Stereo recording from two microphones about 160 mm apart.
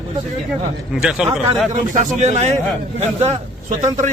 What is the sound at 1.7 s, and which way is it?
A man's voice, 45° right (ahead or behind).